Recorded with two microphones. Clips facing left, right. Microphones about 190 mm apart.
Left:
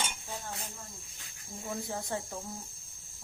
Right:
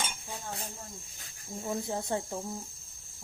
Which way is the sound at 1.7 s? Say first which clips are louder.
Right 4 dB; 25° right (ahead or behind).